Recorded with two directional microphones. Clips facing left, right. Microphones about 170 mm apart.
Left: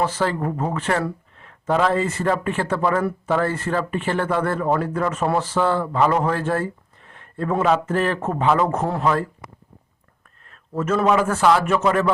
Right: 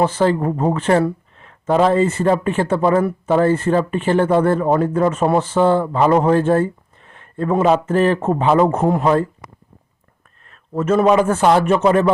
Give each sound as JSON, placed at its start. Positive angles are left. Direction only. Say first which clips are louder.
{"t": 0.0, "sound": "speech", "louder": "right 6 dB", "side_deg": -25}
{"t": 10.5, "sound": "speech", "louder": "right 5 dB", "side_deg": -25}